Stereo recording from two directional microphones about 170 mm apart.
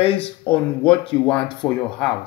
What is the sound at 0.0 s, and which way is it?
Speech, 35° left (ahead or behind).